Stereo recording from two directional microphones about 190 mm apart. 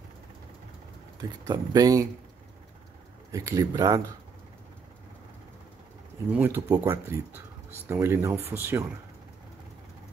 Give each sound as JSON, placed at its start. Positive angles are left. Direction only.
{"t": 1.4, "sound": "speech", "side_deg": -20}
{"t": 3.3, "sound": "speech", "side_deg": -15}
{"t": 6.3, "sound": "speech", "side_deg": -10}